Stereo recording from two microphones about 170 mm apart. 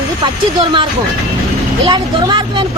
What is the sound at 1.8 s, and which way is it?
Speech, 25° right (ahead or behind).